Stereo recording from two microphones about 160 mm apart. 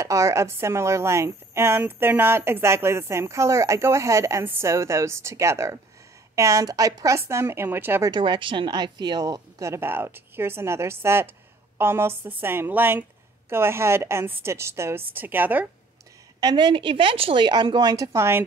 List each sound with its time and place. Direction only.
0.0 s speech: 20° right (ahead or behind)
8.1 s speech: 30° right (ahead or behind); by 15.6 s 10° right (ahead or behind)
16.3 s a woman's voice: 30° right (ahead or behind)